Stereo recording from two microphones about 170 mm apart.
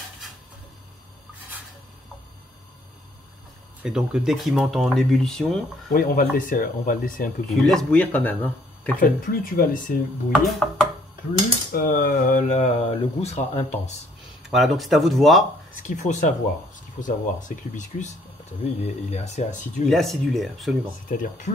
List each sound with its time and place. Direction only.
3.8 s speech: 5° right (ahead or behind)
5.9 s speech: 55° left (ahead or behind)
7.4 s speech: 5° left (ahead or behind)
9.0 s speech: 60° left (ahead or behind)
10.3 s speech: centre (ahead or behind)
11.7 s speech: 55° left (ahead or behind); by 13.9 s 40° left (ahead or behind)
14.4 s speech: centre (ahead or behind)
16.0 s speech: 45° left (ahead or behind)
19.9 s speech: centre (ahead or behind)
21.1 s speech: 50° left (ahead or behind)